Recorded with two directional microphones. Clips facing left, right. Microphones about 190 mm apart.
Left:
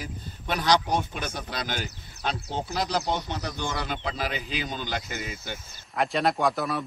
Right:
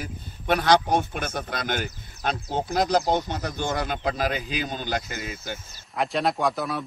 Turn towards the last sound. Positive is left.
turn(degrees=0)  # may be behind; listen again after turning